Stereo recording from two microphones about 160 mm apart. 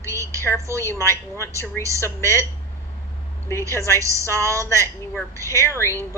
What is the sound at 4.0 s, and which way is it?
Speech, 20° right (ahead or behind).